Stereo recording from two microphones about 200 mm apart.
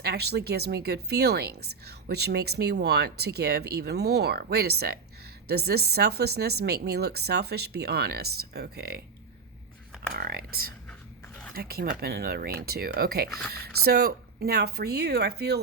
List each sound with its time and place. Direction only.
0.0 s speech: 55° right (ahead or behind)
10.2 s speech: 50° right (ahead or behind)
11.5 s speech: 50° right (ahead or behind)